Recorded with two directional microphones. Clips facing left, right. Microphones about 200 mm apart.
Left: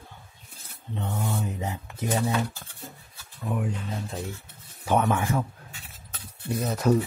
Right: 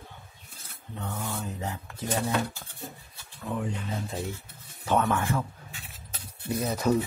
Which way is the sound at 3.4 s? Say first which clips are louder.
Left 2 dB; 15° left (ahead or behind).